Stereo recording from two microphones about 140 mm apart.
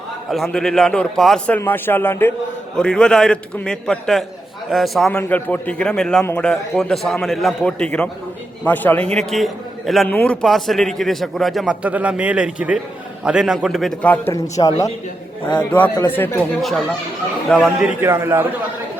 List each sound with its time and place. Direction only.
0.3 s a man's voice: centre (ahead or behind)
1.5 s a man's voice: 15° left (ahead or behind)
2.7 s a man's voice: 5° left (ahead or behind)
9.1 s a man's voice: centre (ahead or behind)
10.1 s a man's voice: 15° left (ahead or behind)
10.4 s a man's voice: centre (ahead or behind)
14.0 s a man's voice: 10° left (ahead or behind)
14.6 s a man's voice: 35° left (ahead or behind)
16.0 s a man's voice: 15° left (ahead or behind)
16.6 s a man's voice: centre (ahead or behind)
18.0 s a man's voice: 15° right (ahead or behind)